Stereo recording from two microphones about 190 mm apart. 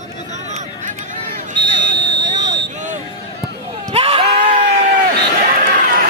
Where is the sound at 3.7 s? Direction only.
30° right (ahead or behind).